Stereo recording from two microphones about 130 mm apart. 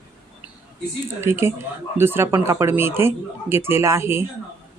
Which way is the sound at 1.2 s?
20° right (ahead or behind).